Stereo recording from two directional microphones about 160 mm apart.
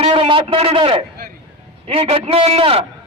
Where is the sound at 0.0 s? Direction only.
35° right (ahead or behind).